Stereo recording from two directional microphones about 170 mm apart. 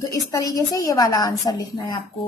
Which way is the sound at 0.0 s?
20° left (ahead or behind).